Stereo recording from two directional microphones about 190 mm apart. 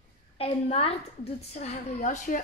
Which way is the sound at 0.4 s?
30° left (ahead or behind).